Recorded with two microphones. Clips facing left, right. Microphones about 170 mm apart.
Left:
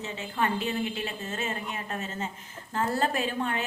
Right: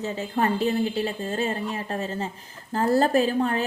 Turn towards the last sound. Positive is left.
turn(degrees=-40)  # may be behind; listen again after turning